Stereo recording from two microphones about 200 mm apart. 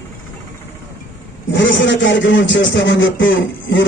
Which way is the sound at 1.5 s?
65° left (ahead or behind).